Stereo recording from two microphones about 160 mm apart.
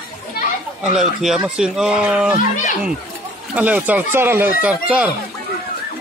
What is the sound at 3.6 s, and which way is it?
Speech, 10° right (ahead or behind).